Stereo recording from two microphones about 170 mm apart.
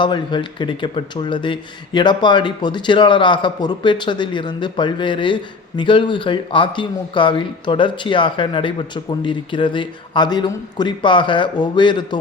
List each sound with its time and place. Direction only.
0.0 s speech: 25° left (ahead or behind)